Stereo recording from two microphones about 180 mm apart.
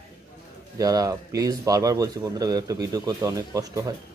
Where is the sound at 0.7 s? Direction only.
20° right (ahead or behind).